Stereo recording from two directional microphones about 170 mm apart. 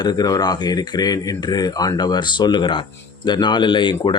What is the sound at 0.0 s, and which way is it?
Speech, 25° left (ahead or behind).